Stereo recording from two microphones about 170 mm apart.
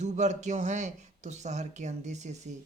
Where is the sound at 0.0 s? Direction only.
45° right (ahead or behind).